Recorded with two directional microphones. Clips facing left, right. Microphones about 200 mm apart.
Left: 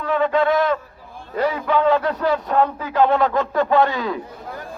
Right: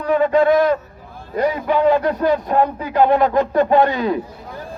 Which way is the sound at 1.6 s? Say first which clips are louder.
Right 2 dB; 10° right (ahead or behind).